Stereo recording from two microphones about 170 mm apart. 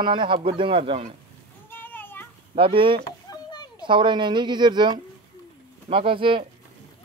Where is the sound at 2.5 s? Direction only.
30° right (ahead or behind).